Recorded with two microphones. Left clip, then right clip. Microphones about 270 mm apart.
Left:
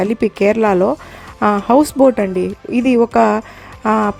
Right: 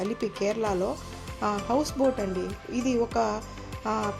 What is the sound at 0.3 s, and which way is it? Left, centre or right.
Speech, left.